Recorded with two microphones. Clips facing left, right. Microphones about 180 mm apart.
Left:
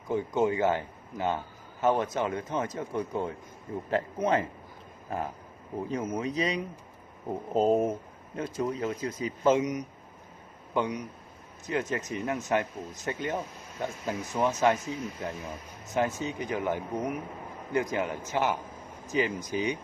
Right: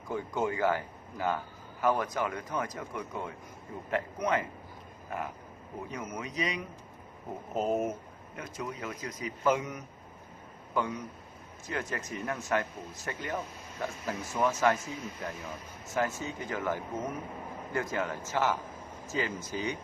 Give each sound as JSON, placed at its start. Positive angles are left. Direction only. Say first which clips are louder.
{"t": 0.1, "sound": "speech", "louder": "left 5 dB", "side_deg": 20}